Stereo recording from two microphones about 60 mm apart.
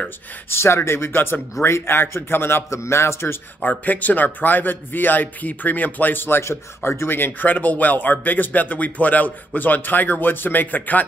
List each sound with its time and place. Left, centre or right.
0.5 s a man's voice: left
3.6 s speech: left
6.4 s a man's voice: left
7.2 s speech: left